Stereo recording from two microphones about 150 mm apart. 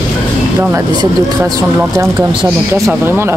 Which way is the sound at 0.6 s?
15° right (ahead or behind).